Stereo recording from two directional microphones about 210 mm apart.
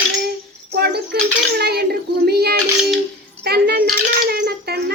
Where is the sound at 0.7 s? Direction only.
50° right (ahead or behind).